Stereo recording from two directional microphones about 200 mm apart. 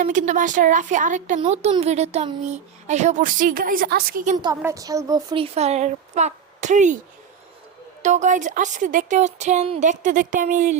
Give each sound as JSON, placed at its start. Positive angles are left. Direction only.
{"t": 0.0, "sound": "speech", "side_deg": -40}
{"t": 4.4, "sound": "speech", "side_deg": -20}
{"t": 8.0, "sound": "speech", "side_deg": -35}